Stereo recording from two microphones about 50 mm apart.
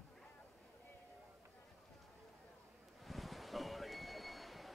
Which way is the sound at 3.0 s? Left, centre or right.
Centre.